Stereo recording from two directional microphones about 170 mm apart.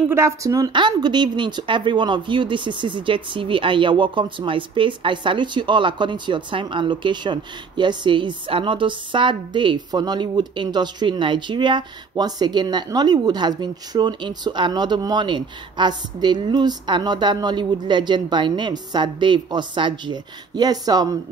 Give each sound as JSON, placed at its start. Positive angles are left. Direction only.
{"t": 0.1, "sound": "speech", "side_deg": -15}